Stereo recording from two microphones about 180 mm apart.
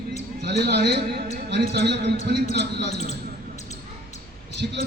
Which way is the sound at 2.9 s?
40° left (ahead or behind).